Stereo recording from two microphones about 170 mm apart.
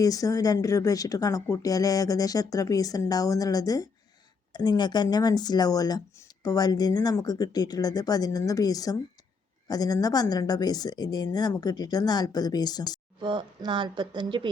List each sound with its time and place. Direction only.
0.0 s speech: 20° left (ahead or behind)
13.2 s a woman's voice: 30° right (ahead or behind)